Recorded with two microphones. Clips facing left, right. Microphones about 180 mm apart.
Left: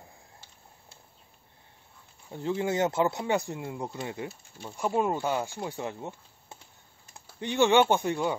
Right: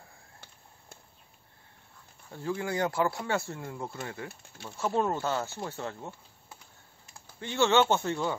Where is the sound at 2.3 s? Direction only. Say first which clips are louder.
Left 4 dB; 20° left (ahead or behind).